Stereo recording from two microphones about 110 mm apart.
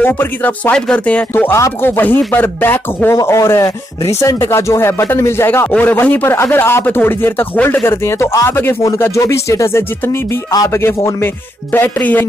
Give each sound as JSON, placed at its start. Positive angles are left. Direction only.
{"t": 0.0, "sound": "speech", "side_deg": 15}
{"t": 10.5, "sound": "speech", "side_deg": 35}
{"t": 10.8, "sound": "speech", "side_deg": 20}